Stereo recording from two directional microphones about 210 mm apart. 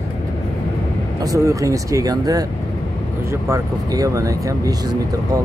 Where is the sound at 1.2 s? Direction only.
15° right (ahead or behind).